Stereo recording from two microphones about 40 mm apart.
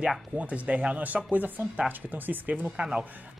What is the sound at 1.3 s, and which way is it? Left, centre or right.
A woman's voice, right.